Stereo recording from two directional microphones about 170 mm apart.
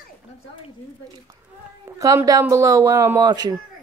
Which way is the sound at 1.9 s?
20° right (ahead or behind).